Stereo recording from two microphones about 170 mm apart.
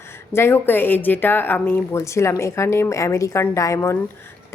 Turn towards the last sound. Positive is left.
turn(degrees=15)  # may be behind; listen again after turning